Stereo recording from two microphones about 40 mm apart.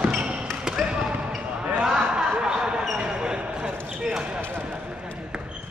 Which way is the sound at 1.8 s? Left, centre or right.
Centre.